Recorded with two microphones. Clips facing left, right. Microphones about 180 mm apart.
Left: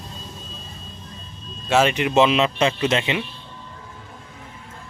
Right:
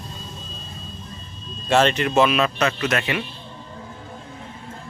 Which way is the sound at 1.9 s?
15° left (ahead or behind).